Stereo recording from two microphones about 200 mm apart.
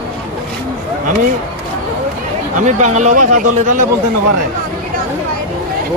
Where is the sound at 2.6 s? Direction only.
35° right (ahead or behind).